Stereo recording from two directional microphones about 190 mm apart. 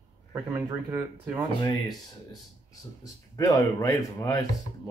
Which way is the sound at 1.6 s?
20° left (ahead or behind).